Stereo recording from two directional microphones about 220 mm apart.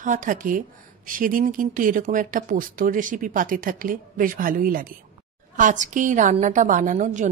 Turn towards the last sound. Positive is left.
turn(degrees=-35)  # may be behind; listen again after turning